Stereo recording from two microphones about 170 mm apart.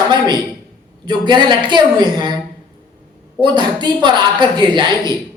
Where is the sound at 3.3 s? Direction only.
25° right (ahead or behind).